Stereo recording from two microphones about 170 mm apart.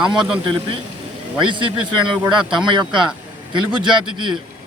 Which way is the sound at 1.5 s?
30° right (ahead or behind).